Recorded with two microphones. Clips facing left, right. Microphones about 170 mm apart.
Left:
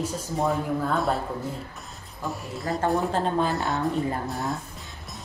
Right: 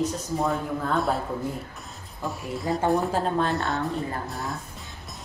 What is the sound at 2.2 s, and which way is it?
Speech, centre (ahead or behind).